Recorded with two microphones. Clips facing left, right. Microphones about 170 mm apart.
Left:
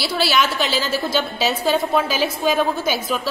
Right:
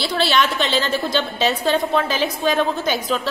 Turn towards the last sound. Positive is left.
turn(degrees=10)  # may be behind; listen again after turning